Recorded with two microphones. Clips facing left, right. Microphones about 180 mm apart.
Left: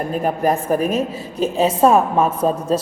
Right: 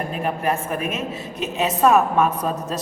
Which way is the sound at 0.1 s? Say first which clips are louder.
Left 7 dB; 40° left (ahead or behind).